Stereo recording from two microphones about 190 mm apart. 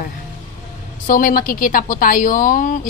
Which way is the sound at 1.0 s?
45° left (ahead or behind).